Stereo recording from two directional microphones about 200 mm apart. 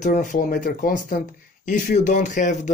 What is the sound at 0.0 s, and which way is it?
Speech, 40° left (ahead or behind).